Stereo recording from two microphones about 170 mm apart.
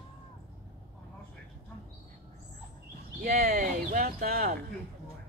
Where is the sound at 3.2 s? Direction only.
55° right (ahead or behind).